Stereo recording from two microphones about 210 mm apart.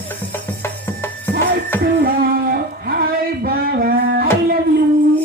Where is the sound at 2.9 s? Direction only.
45° right (ahead or behind).